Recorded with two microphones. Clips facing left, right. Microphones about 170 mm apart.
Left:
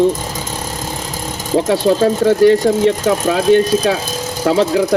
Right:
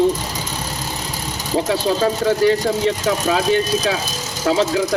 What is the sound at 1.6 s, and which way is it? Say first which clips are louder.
Speech: left 6 dB; 50° left (ahead or behind).